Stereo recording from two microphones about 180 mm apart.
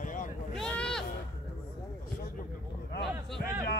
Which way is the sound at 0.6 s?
5° left (ahead or behind).